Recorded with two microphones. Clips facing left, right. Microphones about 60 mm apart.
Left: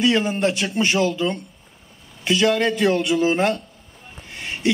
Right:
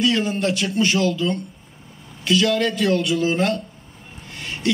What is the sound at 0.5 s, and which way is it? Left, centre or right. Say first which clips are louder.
Speech: right 1 dB; centre.